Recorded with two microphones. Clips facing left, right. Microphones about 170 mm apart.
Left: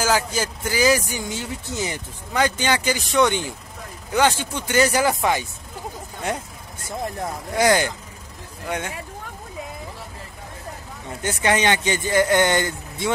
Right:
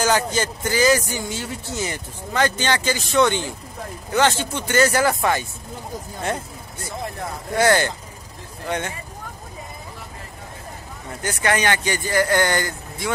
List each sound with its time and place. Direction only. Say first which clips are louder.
0.0 s a man's voice: right 1 dB; 5° left (ahead or behind)
7.5 s a man's voice: right 1 dB; 15° left (ahead or behind)
11.2 s speech: left 1 dB; 20° left (ahead or behind)